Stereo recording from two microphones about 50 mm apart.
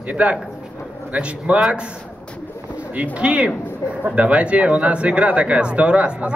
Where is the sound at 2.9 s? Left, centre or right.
Right.